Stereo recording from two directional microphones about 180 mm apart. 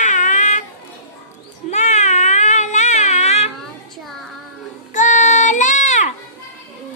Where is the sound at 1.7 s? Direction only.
40° left (ahead or behind).